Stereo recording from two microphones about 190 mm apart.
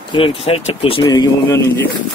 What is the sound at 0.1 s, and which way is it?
Speech, 30° left (ahead or behind).